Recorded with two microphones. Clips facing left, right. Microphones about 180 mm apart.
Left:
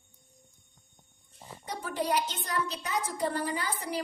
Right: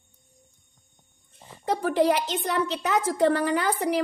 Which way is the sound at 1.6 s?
85° right.